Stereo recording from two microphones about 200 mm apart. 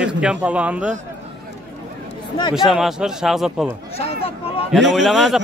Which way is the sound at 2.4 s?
25° left (ahead or behind).